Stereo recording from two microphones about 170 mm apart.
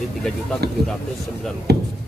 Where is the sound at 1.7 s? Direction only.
70° right (ahead or behind).